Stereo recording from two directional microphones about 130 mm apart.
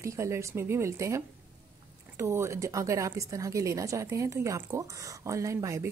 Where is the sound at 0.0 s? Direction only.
20° right (ahead or behind).